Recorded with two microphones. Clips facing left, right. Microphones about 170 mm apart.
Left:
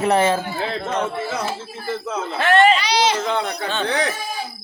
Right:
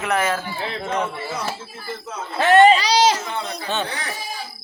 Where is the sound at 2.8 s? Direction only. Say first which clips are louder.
Right 2 dB; 40° right (ahead or behind).